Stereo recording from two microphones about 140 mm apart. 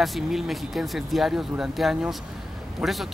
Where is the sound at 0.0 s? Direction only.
Centre (ahead or behind).